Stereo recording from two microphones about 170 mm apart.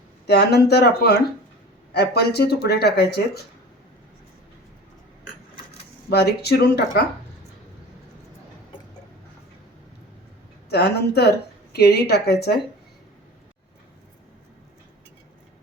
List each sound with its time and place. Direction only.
0.3 s a woman's voice: 75° left (ahead or behind)
6.1 s a woman's voice: 70° left (ahead or behind)
10.7 s a woman's voice: 70° left (ahead or behind)